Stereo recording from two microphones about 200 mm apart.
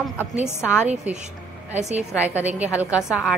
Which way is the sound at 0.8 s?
5° right (ahead or behind).